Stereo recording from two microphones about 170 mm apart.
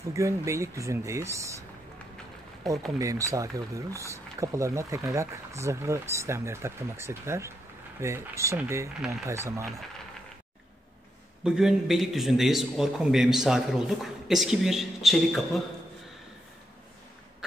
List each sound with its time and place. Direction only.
0.1 s speech: 15° right (ahead or behind)
3.0 s speech: 20° right (ahead or behind)
11.4 s a man's voice: 5° right (ahead or behind)